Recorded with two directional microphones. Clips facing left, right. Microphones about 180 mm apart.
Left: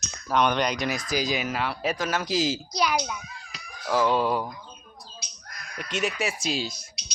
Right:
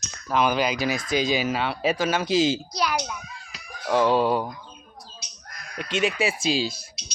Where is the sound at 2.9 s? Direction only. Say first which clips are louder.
Left 1 dB; 5° left (ahead or behind).